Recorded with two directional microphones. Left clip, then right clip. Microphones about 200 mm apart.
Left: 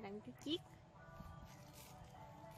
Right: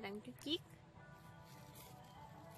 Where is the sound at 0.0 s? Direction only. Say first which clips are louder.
Right 2 dB; 10° left (ahead or behind).